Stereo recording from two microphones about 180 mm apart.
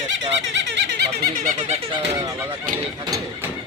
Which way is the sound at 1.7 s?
30° right (ahead or behind).